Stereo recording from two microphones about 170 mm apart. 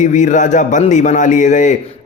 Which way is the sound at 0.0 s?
45° left (ahead or behind).